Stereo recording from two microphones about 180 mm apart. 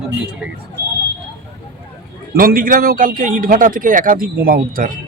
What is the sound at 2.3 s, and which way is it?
A man's voice, 50° right (ahead or behind).